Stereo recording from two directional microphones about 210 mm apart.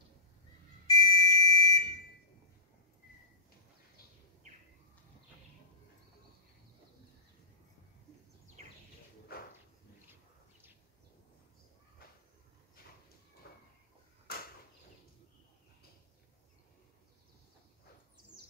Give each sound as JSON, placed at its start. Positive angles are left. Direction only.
{"t": 0.8, "sound": "smoke detector", "side_deg": 20}
{"t": 1.4, "sound": "alarm", "side_deg": 15}
{"t": 14.3, "sound": "a sound", "side_deg": 45}